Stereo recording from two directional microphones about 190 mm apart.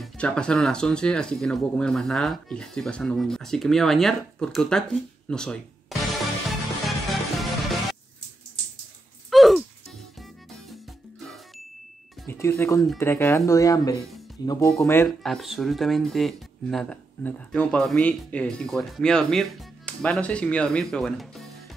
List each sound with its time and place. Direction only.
0.0 s speech: 5° left (ahead or behind)
5.3 s music: 5° left (ahead or behind)
9.3 s music: centre (ahead or behind)
12.3 s speech: 15° left (ahead or behind)
15.0 s speech: centre (ahead or behind)